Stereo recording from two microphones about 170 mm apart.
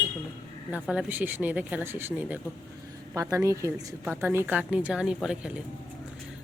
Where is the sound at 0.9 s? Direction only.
10° right (ahead or behind).